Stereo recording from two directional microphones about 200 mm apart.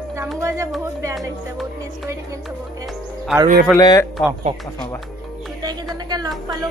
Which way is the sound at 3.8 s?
20° left (ahead or behind).